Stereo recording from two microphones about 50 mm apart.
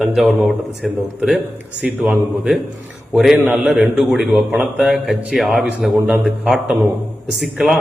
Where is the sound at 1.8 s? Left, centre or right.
Centre.